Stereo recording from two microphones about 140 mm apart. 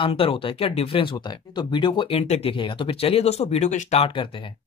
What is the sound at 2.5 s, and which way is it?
Speech, 35° left (ahead or behind).